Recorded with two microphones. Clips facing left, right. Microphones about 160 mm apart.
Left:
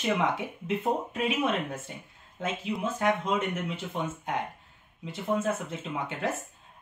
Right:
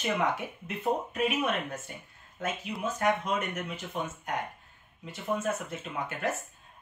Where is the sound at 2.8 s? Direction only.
25° left (ahead or behind).